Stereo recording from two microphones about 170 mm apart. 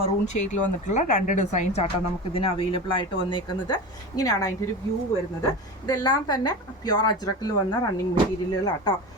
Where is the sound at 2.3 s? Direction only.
35° left (ahead or behind).